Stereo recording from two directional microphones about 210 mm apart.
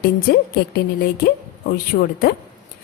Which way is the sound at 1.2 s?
45° left (ahead or behind).